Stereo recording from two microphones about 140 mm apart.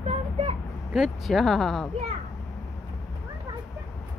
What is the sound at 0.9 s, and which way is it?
Speech, centre (ahead or behind).